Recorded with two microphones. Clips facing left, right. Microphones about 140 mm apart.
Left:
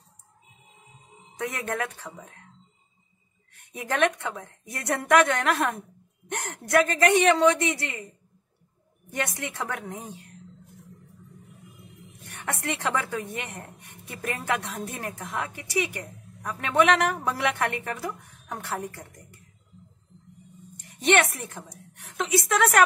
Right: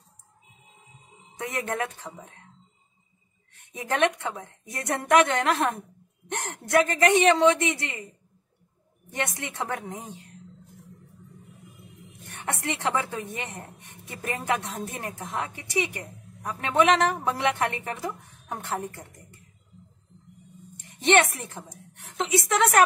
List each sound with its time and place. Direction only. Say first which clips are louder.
1.4 s a woman's voice: even; 20° right (ahead or behind)
3.7 s a woman's voice: even; 15° right (ahead or behind)
9.1 s a woman's voice: left 1 dB; 20° right (ahead or behind)
12.4 s a woman's voice: right 1 dB; 20° right (ahead or behind)
21.0 s a woman's voice: right 1 dB; 20° right (ahead or behind)